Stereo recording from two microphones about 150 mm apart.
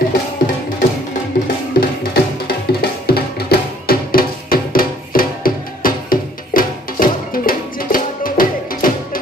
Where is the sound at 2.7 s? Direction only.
90° left.